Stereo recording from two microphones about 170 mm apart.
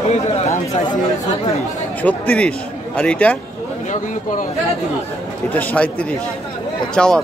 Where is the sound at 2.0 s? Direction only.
10° left (ahead or behind).